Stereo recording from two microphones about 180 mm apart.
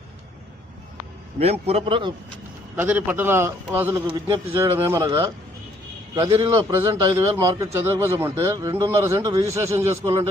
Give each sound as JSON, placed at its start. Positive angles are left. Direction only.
{"t": 1.6, "sound": "a man's voice", "side_deg": -35}
{"t": 2.7, "sound": "a man's voice", "side_deg": -10}